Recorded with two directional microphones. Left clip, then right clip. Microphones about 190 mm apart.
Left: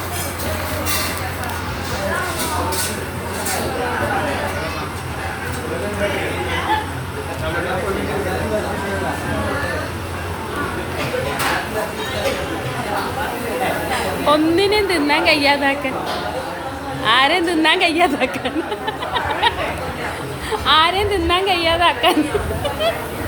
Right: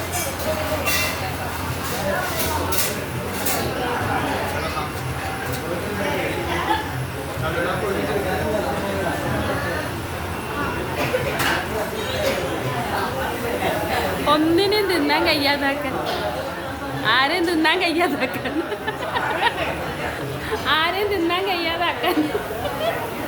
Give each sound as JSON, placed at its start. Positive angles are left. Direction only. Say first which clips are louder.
{"t": 14.3, "sound": "a sound", "louder": "left 3 dB", "side_deg": 10}
{"t": 17.1, "sound": "a woman's voice", "louder": "left 4 dB", "side_deg": 15}
{"t": 20.7, "sound": "a woman's voice", "louder": "left 6 dB", "side_deg": 20}